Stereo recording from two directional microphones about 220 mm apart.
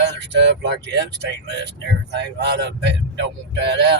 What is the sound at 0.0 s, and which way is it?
Speech, 50° right (ahead or behind).